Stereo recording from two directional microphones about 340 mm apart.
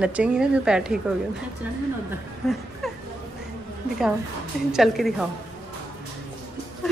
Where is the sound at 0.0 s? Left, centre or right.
Centre.